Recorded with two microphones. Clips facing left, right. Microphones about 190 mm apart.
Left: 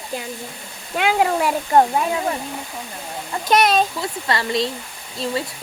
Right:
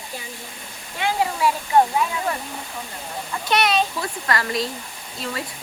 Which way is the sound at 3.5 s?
45° left (ahead or behind).